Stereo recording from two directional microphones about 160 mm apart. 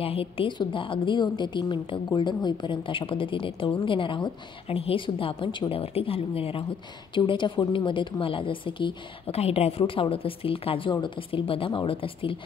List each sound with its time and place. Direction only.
0.0 s a woman's voice: 35° left (ahead or behind)